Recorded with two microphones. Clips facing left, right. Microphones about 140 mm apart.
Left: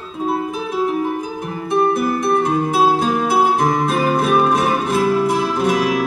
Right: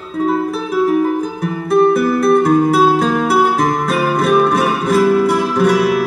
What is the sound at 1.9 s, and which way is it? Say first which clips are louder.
Music: right 5 dB; 75° right (ahead or behind).